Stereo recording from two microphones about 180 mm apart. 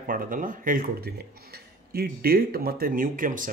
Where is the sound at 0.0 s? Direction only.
50° right (ahead or behind).